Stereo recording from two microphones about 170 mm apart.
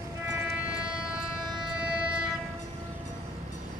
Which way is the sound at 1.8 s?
5° right (ahead or behind).